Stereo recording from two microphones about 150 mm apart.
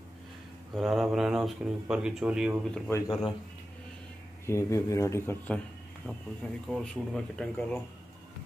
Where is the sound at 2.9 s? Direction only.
25° left (ahead or behind).